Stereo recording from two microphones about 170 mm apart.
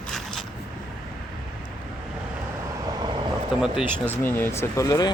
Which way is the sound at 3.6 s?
5° right (ahead or behind).